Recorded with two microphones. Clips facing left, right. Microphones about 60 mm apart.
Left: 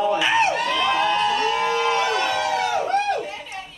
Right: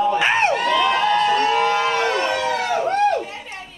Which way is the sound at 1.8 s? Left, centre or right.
Right.